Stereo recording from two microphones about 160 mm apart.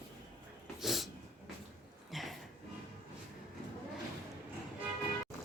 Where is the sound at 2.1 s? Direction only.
Centre (ahead or behind).